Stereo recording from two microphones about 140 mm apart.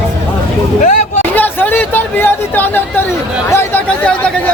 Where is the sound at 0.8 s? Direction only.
60° left (ahead or behind).